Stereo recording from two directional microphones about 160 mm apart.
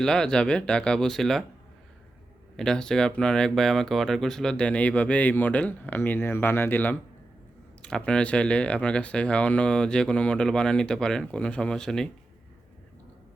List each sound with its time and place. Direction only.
0.0 s speech: 5° left (ahead or behind)
2.6 s speech: 5° left (ahead or behind)